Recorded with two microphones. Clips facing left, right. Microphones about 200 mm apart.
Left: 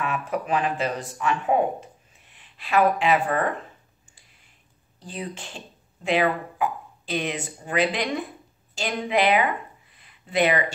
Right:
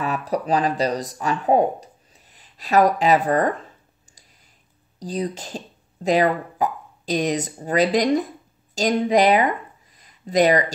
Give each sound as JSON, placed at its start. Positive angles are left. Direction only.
{"t": 0.0, "sound": "speech", "side_deg": -35}
{"t": 4.9, "sound": "speech", "side_deg": -40}